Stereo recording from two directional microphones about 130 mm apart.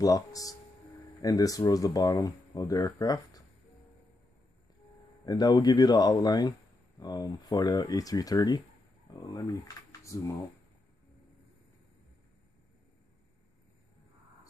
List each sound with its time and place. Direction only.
0.0 s speech: 25° left (ahead or behind)
5.2 s speech: 30° left (ahead or behind)
10.1 s speech: 20° left (ahead or behind)